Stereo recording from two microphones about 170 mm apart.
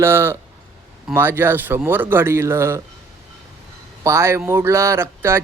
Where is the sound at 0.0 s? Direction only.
15° right (ahead or behind).